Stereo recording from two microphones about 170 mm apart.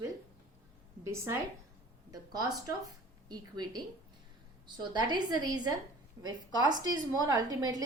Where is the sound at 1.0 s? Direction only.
15° right (ahead or behind).